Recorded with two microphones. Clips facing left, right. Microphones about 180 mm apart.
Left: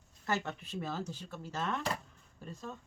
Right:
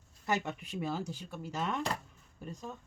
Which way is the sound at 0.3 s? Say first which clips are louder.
Right 2 dB; 15° right (ahead or behind).